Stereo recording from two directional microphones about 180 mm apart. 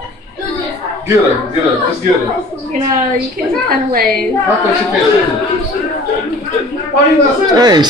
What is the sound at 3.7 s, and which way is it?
Speech, 55° right (ahead or behind).